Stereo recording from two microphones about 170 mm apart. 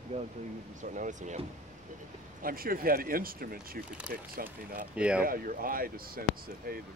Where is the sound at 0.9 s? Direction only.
45° right (ahead or behind).